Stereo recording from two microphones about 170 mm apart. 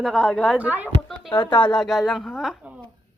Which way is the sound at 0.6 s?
10° right (ahead or behind).